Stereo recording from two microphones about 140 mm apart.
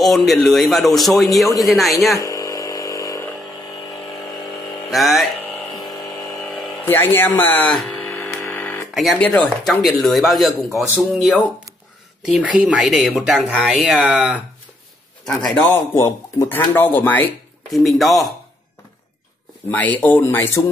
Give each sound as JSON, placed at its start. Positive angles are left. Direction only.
{"t": 0.0, "sound": "speech", "side_deg": 0}
{"t": 2.1, "sound": "a sound", "side_deg": 25}
{"t": 4.9, "sound": "speech", "side_deg": 0}
{"t": 5.8, "sound": "a sound", "side_deg": 30}
{"t": 6.4, "sound": "a sound", "side_deg": 15}
{"t": 8.9, "sound": "speech", "side_deg": 0}
{"t": 15.3, "sound": "speech", "side_deg": 10}
{"t": 17.7, "sound": "speech", "side_deg": 0}
{"t": 19.7, "sound": "speech", "side_deg": 10}